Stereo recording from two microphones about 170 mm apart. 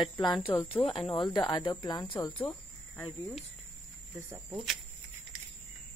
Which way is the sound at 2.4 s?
10° left (ahead or behind).